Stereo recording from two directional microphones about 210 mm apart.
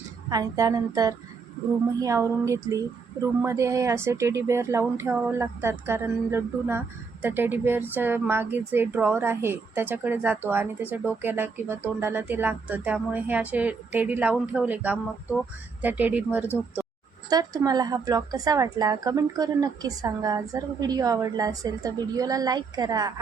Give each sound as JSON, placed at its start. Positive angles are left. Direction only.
{"t": 0.3, "sound": "speech", "side_deg": -15}